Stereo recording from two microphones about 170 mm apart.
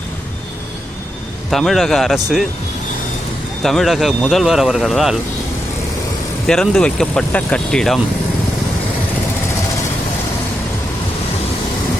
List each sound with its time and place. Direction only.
1.5 s speech: centre (ahead or behind)
3.6 s speech: centre (ahead or behind)
6.5 s speech: 5° left (ahead or behind)